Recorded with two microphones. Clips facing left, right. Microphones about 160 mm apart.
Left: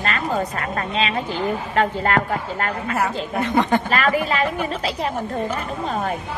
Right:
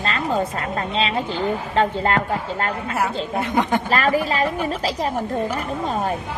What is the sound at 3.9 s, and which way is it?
A woman's voice, 35° right (ahead or behind).